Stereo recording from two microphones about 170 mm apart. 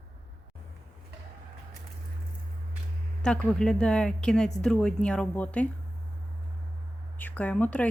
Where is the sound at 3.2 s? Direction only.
5° left (ahead or behind).